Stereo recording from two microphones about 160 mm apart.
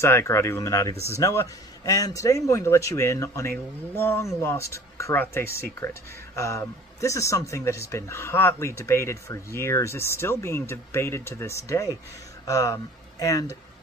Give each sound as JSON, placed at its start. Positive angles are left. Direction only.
{"t": 0.0, "sound": "speech", "side_deg": 15}